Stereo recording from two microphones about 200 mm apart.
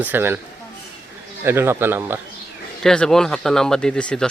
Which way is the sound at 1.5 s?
10° right (ahead or behind).